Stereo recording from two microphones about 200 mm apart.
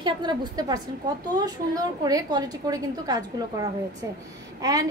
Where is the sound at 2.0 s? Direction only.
20° right (ahead or behind).